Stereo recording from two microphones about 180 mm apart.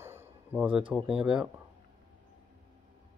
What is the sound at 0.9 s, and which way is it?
Speech, 5° right (ahead or behind).